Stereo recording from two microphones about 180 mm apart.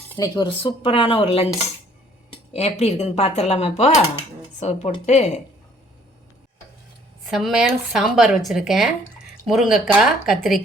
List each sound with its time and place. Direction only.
0.2 s speech: 25° left (ahead or behind)
2.5 s speech: 35° left (ahead or behind)
7.3 s speech: centre (ahead or behind)